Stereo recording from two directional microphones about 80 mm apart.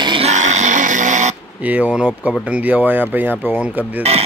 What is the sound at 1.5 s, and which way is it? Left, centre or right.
Speech, centre.